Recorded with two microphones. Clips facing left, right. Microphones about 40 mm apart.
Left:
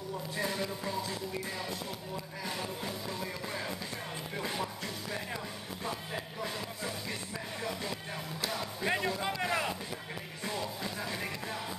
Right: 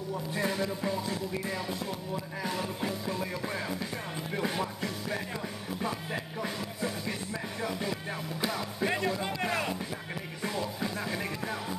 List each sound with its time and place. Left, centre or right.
0.3 s music: right
2.4 s music: centre
8.5 s music: centre
10.4 s music: centre